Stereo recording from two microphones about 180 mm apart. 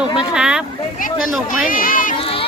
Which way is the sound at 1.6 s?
50° left (ahead or behind).